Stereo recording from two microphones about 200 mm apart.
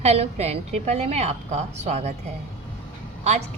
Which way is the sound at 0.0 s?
30° right (ahead or behind).